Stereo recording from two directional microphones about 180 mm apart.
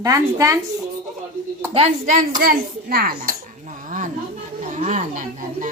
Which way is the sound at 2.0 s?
50° right (ahead or behind).